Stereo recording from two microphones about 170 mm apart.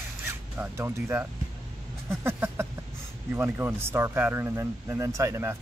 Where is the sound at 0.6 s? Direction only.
15° right (ahead or behind).